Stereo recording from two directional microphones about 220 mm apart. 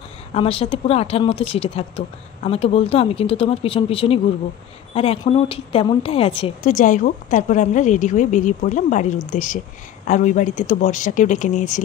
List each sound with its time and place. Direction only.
0.3 s a woman's voice: 25° left (ahead or behind)